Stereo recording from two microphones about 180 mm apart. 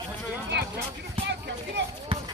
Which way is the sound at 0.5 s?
65° right (ahead or behind).